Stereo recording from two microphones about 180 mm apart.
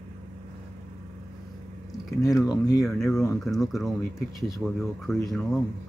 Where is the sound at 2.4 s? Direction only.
20° left (ahead or behind).